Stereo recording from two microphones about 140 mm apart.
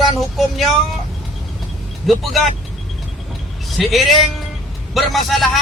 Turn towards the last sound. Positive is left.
turn(degrees=0)  # may be behind; listen again after turning